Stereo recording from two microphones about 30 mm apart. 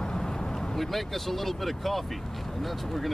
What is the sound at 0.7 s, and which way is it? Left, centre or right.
Speech, centre.